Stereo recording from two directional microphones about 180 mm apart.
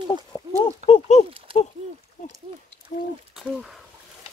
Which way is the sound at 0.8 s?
40° left (ahead or behind).